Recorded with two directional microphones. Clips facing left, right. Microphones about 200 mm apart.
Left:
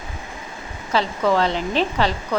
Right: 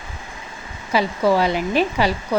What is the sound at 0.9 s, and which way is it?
Speech, 10° right (ahead or behind).